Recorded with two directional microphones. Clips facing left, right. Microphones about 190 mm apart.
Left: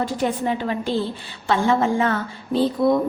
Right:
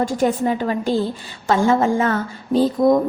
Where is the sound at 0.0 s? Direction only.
45° right (ahead or behind).